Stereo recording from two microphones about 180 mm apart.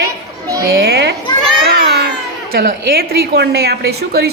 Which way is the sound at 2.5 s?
55° right (ahead or behind).